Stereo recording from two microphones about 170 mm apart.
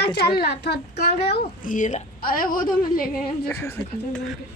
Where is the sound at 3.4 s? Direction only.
10° left (ahead or behind).